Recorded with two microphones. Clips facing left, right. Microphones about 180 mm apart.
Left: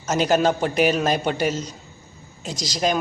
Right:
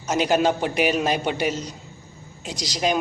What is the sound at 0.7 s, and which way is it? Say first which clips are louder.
A man's voice: left 2 dB; 45° left (ahead or behind).